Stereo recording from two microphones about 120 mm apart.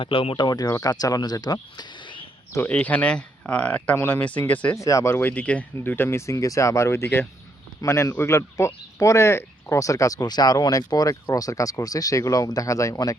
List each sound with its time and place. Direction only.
0.0 s speech: 45° left (ahead or behind)
1.7 s a sound: 40° left (ahead or behind)
2.6 s speech: 15° left (ahead or behind)
4.8 s speech: 25° left (ahead or behind)